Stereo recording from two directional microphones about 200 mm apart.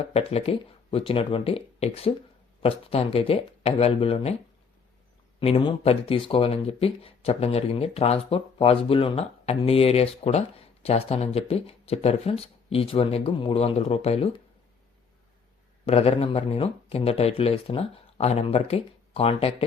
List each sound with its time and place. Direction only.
0.0 s speech: 30° left (ahead or behind)
5.4 s speech: 25° left (ahead or behind)
15.9 s speech: 30° left (ahead or behind)